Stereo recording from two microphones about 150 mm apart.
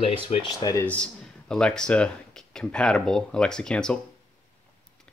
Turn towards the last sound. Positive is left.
turn(degrees=5)  # may be behind; listen again after turning